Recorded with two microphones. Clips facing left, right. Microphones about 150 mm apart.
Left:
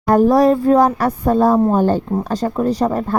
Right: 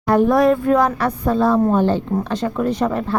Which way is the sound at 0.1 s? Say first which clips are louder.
Left 2 dB; 40° left (ahead or behind).